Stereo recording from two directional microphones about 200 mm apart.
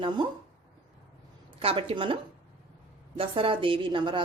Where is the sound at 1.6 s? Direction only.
30° right (ahead or behind).